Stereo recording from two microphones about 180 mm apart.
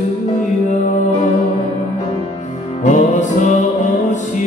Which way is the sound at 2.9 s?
45° left (ahead or behind).